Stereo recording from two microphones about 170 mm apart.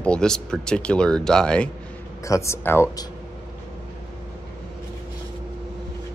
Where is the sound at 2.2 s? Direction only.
15° left (ahead or behind).